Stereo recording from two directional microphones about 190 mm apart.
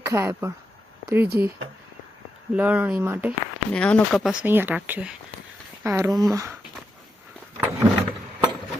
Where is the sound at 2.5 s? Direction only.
10° right (ahead or behind).